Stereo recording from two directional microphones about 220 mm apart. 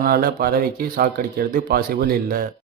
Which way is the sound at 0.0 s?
40° right (ahead or behind).